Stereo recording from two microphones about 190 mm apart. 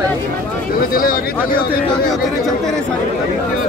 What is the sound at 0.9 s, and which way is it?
Speech, 50° left (ahead or behind).